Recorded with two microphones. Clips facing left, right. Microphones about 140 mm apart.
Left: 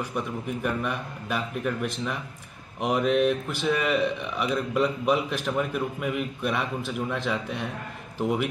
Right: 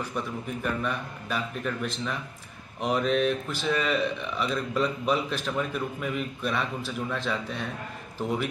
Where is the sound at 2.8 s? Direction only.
10° left (ahead or behind).